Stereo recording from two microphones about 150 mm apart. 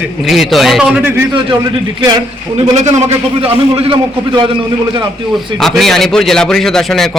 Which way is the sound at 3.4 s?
40° right (ahead or behind).